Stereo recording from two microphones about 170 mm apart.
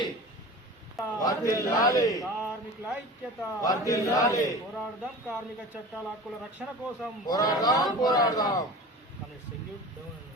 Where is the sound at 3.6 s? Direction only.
20° left (ahead or behind).